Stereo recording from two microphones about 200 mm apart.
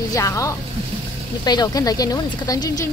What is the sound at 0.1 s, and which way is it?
Speech, 15° left (ahead or behind).